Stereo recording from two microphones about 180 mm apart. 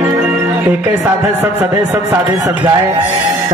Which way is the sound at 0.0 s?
10° right (ahead or behind).